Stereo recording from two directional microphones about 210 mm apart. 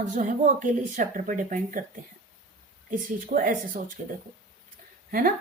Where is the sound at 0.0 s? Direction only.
35° right (ahead or behind).